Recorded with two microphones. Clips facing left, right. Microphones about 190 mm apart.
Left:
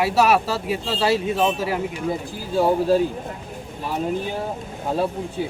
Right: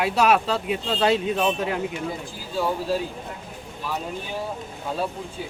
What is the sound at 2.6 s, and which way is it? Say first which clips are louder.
Speech: left 7 dB; 50° left (ahead or behind).